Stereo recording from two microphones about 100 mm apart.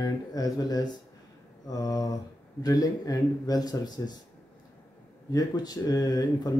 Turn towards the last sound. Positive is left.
turn(degrees=40)  # may be behind; listen again after turning